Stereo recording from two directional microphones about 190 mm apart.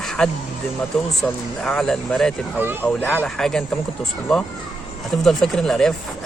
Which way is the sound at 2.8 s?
5° left (ahead or behind).